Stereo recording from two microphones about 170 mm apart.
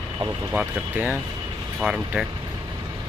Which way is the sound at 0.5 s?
5° right (ahead or behind).